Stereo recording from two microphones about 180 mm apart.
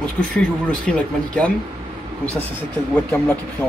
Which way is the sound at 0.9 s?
5° left (ahead or behind).